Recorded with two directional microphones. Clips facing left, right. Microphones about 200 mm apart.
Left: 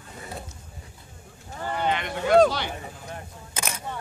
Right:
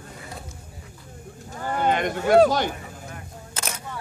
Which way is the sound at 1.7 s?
45° right (ahead or behind).